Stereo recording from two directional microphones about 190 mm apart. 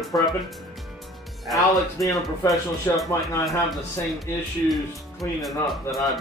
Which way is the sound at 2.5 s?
Centre (ahead or behind).